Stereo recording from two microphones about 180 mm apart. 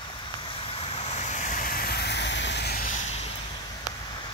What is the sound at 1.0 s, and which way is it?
Vehicle, 40° left (ahead or behind).